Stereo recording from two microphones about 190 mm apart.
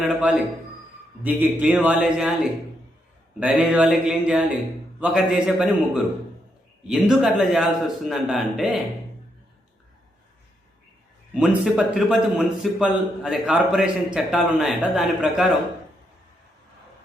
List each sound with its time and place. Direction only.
0.0 s a man's voice: centre (ahead or behind)
11.3 s a man's voice: 5° right (ahead or behind)